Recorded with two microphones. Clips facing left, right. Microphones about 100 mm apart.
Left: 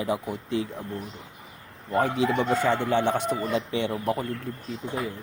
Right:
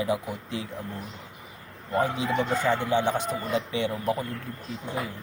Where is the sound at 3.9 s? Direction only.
25° left (ahead or behind).